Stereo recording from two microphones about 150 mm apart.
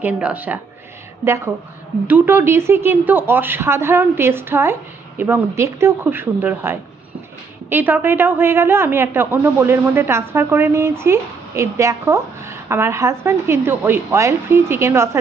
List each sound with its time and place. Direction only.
0.0 s a woman's voice: 10° right (ahead or behind)
2.0 s a woman's voice: 10° right (ahead or behind)